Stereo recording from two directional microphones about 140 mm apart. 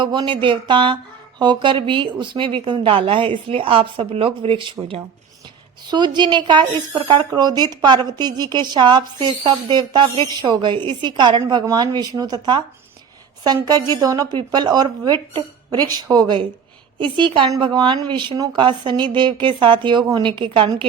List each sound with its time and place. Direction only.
0.0 s a woman's voice: 35° right (ahead or behind)